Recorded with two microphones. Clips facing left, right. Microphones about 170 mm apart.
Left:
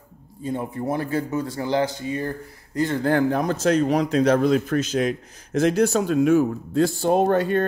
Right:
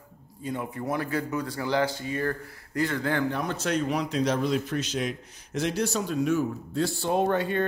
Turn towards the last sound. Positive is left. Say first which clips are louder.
# left 5 dB
turn(degrees=40)  # may be behind; listen again after turning